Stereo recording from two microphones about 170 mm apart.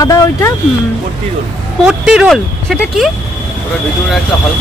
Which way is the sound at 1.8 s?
5° right (ahead or behind).